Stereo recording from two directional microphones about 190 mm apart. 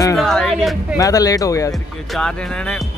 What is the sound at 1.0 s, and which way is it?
Speech, 20° left (ahead or behind).